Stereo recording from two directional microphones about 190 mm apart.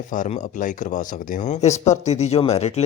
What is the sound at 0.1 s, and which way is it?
Speech, 45° left (ahead or behind).